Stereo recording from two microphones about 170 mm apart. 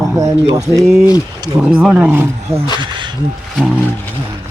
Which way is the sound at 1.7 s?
5° right (ahead or behind).